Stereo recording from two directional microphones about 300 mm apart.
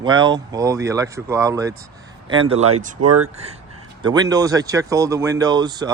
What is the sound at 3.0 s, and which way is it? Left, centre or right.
Speech, right.